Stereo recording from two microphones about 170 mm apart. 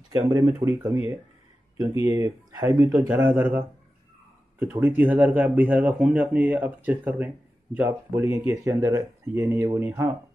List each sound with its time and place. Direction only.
0.1 s speech: 20° right (ahead or behind)
2.0 s speech: 20° right (ahead or behind)